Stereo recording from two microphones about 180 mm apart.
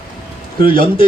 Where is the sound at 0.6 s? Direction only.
30° left (ahead or behind).